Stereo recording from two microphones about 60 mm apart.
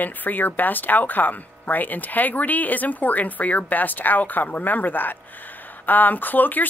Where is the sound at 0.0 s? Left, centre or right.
Left.